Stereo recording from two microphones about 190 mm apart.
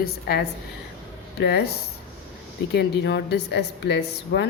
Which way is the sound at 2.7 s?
60° left (ahead or behind).